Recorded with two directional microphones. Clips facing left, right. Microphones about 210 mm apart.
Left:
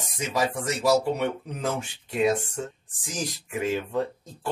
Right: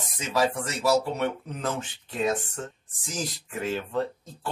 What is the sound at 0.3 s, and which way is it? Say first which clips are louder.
Speech: right 1 dB; 15° left (ahead or behind).